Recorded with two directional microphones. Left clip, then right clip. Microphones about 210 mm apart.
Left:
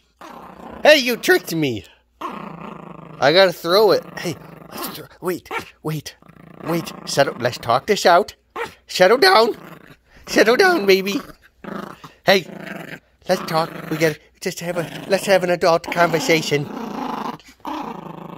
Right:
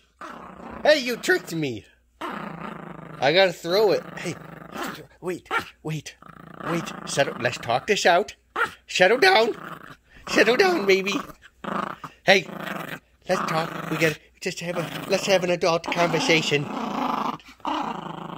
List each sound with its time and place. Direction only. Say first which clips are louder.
0.2 s dog: left 1 dB; 15° left (ahead or behind)
0.8 s speech: left 7 dB; 35° left (ahead or behind)
2.1 s dog: left 2 dB; centre (ahead or behind)
3.2 s speech: left 5 dB; 35° left (ahead or behind)
4.6 s dog: left 1 dB; centre (ahead or behind)
4.9 s speech: left 6 dB; 40° left (ahead or behind)
9.6 s a sound: right 3 dB; centre (ahead or behind)
10.2 s speech: left 5 dB; 30° left (ahead or behind)
11.6 s dog: right 3 dB; 5° right (ahead or behind)
13.3 s speech: left 4 dB; 35° left (ahead or behind)
13.7 s speech: left 2 dB; 10° right (ahead or behind)
14.4 s speech: left 4 dB; 30° left (ahead or behind)
16.6 s dog: right 1 dB; 5° right (ahead or behind)